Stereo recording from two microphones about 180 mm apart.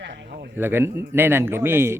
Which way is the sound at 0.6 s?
10° right (ahead or behind).